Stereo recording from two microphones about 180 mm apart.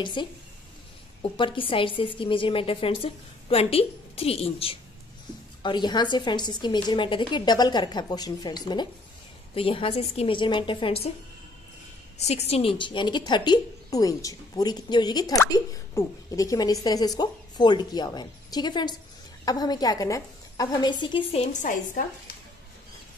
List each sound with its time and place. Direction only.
0.0 s a woman's voice: 25° left (ahead or behind)
12.2 s a woman's voice: 35° left (ahead or behind)